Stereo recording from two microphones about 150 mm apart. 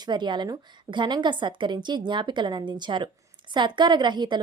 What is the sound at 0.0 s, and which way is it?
A woman's voice, 30° right (ahead or behind).